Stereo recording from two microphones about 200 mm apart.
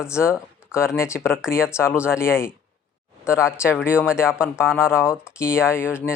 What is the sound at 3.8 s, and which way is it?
Speech, 10° left (ahead or behind).